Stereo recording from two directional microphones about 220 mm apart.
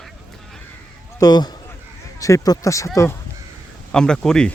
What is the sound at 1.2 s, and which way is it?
Speech, 20° left (ahead or behind).